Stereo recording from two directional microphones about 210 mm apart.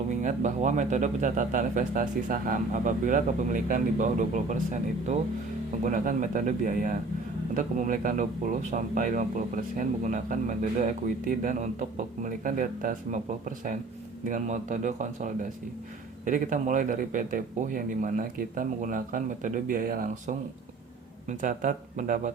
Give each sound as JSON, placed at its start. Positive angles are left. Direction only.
{"t": 0.2, "sound": "speech", "side_deg": -35}
{"t": 14.3, "sound": "speech", "side_deg": -35}